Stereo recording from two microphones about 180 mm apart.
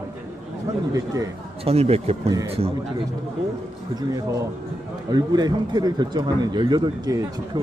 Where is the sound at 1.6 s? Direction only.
35° right (ahead or behind).